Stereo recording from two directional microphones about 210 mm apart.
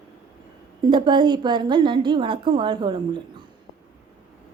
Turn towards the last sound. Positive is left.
turn(degrees=-20)  # may be behind; listen again after turning